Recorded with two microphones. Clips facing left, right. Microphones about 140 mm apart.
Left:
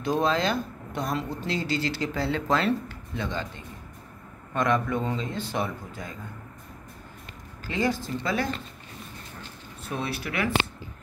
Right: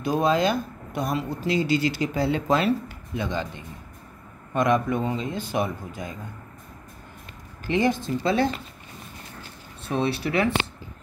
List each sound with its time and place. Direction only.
0.0 s speech: 10° right (ahead or behind)
4.6 s speech: 15° right (ahead or behind)
7.6 s speech: 20° right (ahead or behind)
9.8 s speech: 25° right (ahead or behind)